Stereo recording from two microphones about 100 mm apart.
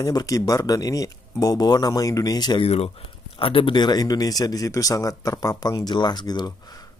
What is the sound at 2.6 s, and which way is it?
Speech, 90° left.